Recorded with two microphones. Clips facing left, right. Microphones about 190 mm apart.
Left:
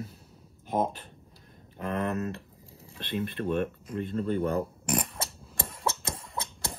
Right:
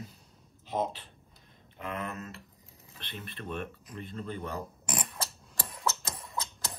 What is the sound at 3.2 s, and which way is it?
Speech, 55° left (ahead or behind).